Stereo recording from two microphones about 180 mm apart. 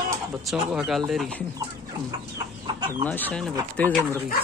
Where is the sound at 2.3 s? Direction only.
20° right (ahead or behind).